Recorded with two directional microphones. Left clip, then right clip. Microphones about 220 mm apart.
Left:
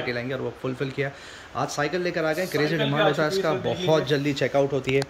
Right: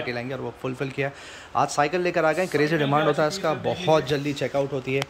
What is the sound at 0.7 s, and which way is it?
Speech, 10° right (ahead or behind).